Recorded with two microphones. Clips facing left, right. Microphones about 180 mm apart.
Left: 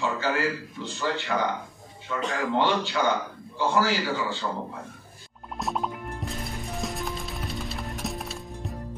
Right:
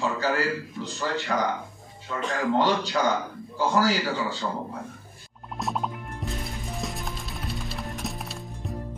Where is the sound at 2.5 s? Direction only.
40° right (ahead or behind).